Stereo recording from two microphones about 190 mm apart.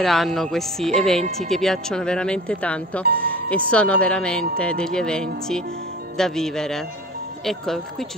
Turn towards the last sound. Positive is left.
turn(degrees=0)  # may be behind; listen again after turning